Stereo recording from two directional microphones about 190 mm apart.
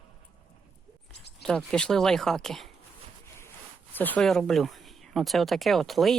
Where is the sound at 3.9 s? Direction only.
10° left (ahead or behind).